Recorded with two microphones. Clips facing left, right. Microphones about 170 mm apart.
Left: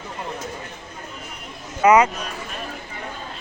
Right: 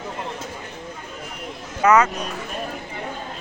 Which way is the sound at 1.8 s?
10° left (ahead or behind).